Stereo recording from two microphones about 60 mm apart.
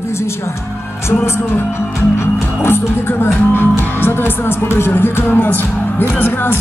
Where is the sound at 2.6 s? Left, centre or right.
Left.